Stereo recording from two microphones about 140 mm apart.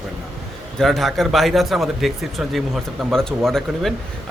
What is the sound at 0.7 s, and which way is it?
Speech, centre (ahead or behind).